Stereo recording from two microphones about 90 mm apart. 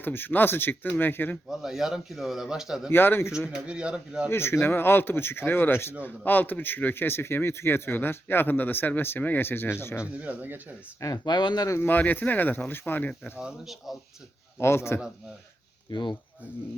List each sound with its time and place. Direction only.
0.0 s a man's voice: 20° left (ahead or behind)
1.5 s a man's voice: 5° right (ahead or behind)
2.9 s a man's voice: 25° left (ahead or behind)
3.7 s a man's voice: 10° right (ahead or behind)
4.3 s a man's voice: 25° left (ahead or behind)
10.0 s a man's voice: 15° right (ahead or behind)
11.0 s speech: 50° left (ahead or behind)
11.7 s a man's voice: 25° left (ahead or behind)
13.4 s a man's voice: centre (ahead or behind)
14.6 s a man's voice: 30° left (ahead or behind)
15.9 s speech: 55° left (ahead or behind)